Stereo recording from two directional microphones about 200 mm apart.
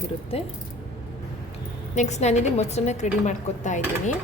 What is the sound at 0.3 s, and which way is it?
Speech, 30° left (ahead or behind).